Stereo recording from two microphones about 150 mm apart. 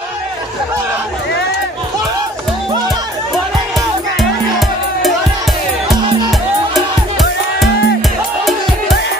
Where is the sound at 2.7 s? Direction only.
25° right (ahead or behind).